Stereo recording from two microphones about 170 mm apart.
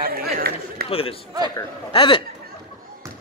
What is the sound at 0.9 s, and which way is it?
A man's voice, 35° left (ahead or behind).